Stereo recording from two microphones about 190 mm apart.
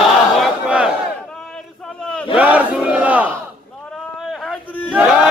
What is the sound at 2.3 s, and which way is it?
Battle cry, 10° right (ahead or behind).